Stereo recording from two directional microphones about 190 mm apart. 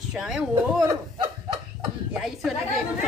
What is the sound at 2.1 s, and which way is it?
Speech, centre (ahead or behind).